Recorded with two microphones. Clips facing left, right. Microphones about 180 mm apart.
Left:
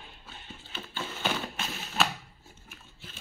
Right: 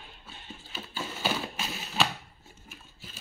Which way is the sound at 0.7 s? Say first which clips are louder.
Even; 5° right (ahead or behind).